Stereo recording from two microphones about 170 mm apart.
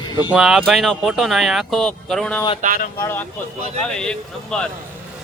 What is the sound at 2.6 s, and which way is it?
Speech, 50° right (ahead or behind).